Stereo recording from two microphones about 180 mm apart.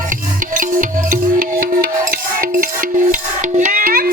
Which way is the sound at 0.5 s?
45° right (ahead or behind).